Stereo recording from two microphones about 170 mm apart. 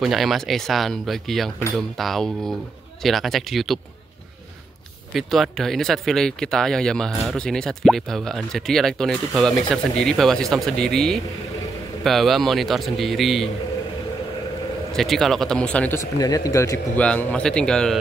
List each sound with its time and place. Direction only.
0.0 s speech: centre (ahead or behind)
5.1 s speech: centre (ahead or behind)
15.0 s speech: centre (ahead or behind)